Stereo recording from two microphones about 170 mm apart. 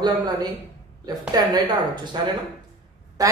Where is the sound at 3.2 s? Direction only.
20° right (ahead or behind).